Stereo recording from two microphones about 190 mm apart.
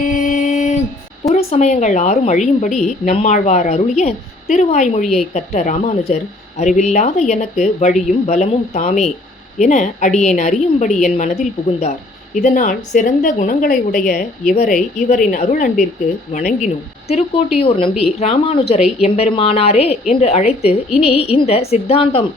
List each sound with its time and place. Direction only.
0.0 s mantra: 45° left (ahead or behind)
1.3 s a woman's voice: 35° left (ahead or behind)
17.1 s a woman's voice: 35° left (ahead or behind)